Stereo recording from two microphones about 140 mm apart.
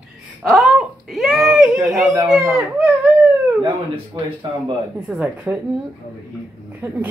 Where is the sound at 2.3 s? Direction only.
5° right (ahead or behind).